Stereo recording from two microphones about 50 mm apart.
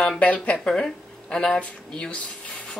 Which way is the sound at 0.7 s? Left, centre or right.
Centre.